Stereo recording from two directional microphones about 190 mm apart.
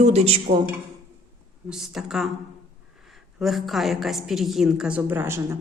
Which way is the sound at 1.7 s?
Centre (ahead or behind).